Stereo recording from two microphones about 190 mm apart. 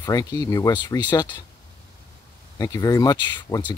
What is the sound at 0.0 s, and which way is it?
Speech, 20° left (ahead or behind).